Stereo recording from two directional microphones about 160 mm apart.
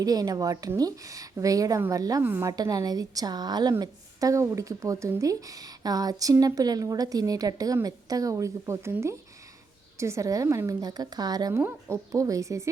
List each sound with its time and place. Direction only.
0.0 s speech: 25° right (ahead or behind)